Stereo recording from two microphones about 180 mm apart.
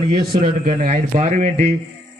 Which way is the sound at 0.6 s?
50° right (ahead or behind).